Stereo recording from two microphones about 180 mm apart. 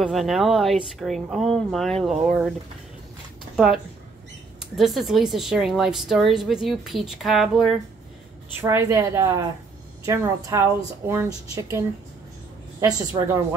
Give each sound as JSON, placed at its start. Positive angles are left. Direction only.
{"t": 0.0, "sound": "speech", "side_deg": 0}
{"t": 3.5, "sound": "speech", "side_deg": 0}
{"t": 8.5, "sound": "speech", "side_deg": -15}
{"t": 12.8, "sound": "a woman's voice", "side_deg": -20}